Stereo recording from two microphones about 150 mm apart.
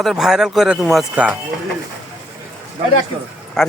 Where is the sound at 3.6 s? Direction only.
Centre (ahead or behind).